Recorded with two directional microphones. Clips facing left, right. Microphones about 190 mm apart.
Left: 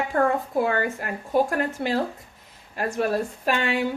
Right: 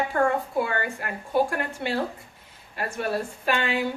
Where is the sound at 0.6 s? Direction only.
45° left (ahead or behind).